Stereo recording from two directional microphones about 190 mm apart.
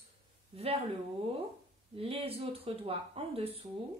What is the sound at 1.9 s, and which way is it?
Speech, 30° right (ahead or behind).